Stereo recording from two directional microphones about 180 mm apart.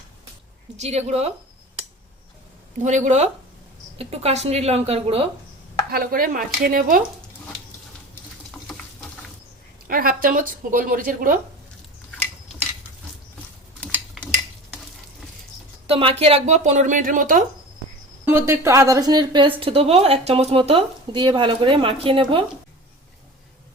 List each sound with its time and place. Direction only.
0.8 s speech: 35° right (ahead or behind)
2.7 s speech: 40° right (ahead or behind)
5.9 s speech: 50° right (ahead or behind)
9.8 s speech: 55° right (ahead or behind)
15.9 s speech: 30° right (ahead or behind)
18.3 s a woman's voice: 15° right (ahead or behind); by 22.4 s 30° right (ahead or behind)